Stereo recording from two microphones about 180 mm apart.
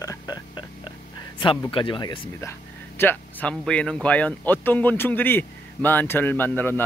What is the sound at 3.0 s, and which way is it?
Speech, 10° left (ahead or behind).